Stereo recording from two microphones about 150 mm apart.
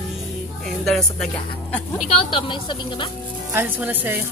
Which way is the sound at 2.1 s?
35° left (ahead or behind).